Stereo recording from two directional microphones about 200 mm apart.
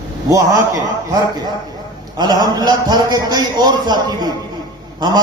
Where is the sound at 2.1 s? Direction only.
20° right (ahead or behind).